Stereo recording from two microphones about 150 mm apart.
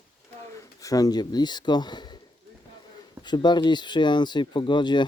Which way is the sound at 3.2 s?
30° left (ahead or behind).